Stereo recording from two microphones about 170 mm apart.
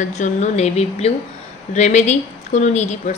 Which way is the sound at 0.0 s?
45° left (ahead or behind).